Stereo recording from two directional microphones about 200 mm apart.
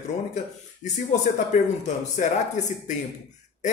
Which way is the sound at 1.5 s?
35° left (ahead or behind).